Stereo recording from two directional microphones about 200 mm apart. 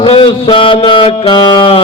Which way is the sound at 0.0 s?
25° left (ahead or behind).